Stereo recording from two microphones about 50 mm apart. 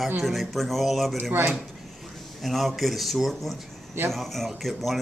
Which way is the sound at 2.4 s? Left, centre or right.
Centre.